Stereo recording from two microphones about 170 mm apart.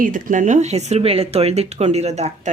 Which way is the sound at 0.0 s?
50° right (ahead or behind).